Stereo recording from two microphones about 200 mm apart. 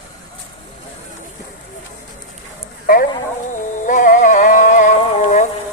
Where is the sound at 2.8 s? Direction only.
45° left (ahead or behind).